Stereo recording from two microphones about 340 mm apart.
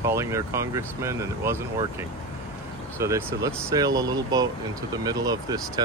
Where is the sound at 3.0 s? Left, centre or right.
Centre.